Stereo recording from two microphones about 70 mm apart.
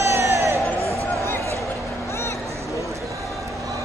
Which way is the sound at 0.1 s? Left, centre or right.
Right.